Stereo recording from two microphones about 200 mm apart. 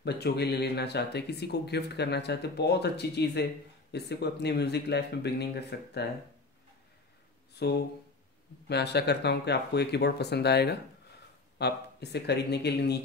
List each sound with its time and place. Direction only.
0.0 s speech: 55° left (ahead or behind)
7.5 s speech: 55° left (ahead or behind)